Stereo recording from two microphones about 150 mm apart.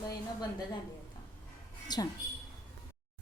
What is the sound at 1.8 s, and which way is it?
Speech, 25° left (ahead or behind).